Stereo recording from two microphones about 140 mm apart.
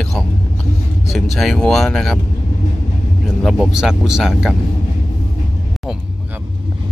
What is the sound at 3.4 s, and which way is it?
Speech, 5° right (ahead or behind).